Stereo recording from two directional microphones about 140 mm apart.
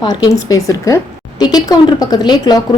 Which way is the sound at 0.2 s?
25° left (ahead or behind).